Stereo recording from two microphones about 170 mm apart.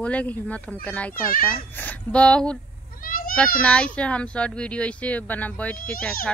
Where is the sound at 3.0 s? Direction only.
55° left (ahead or behind).